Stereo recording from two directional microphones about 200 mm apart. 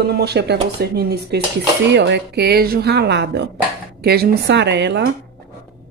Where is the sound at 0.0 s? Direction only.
55° right (ahead or behind).